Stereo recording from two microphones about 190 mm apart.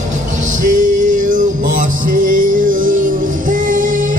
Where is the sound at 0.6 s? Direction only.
45° right (ahead or behind).